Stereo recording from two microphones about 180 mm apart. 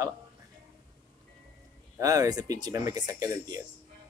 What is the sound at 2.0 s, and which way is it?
Speech, 20° right (ahead or behind).